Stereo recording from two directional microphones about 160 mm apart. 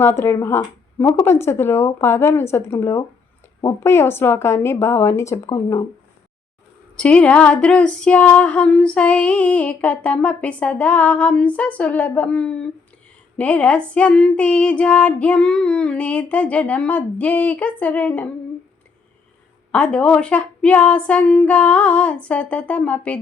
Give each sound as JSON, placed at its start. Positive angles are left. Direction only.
{"t": 0.0, "sound": "music", "side_deg": 15}
{"t": 6.9, "sound": "music", "side_deg": 5}
{"t": 19.7, "sound": "music", "side_deg": 5}